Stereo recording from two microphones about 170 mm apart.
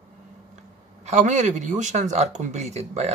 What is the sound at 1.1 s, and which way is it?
Speech, 45° right (ahead or behind).